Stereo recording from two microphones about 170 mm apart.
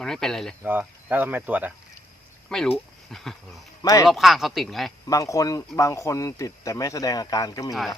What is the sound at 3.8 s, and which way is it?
Speech, 20° left (ahead or behind).